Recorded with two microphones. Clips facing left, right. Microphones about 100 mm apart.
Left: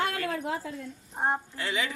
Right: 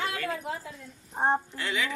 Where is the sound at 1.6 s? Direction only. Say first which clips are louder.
Even; 30° left (ahead or behind).